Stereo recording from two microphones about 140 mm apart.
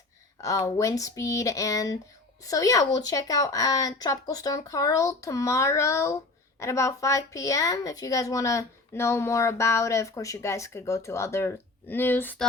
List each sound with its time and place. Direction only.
0.4 s a woman's voice: 25° left (ahead or behind)